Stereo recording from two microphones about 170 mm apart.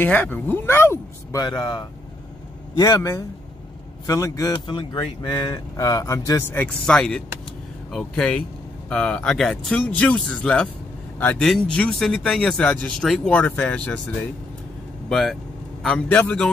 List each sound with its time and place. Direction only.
0.0 s speech: 10° left (ahead or behind)
6.8 s speech: 5° left (ahead or behind)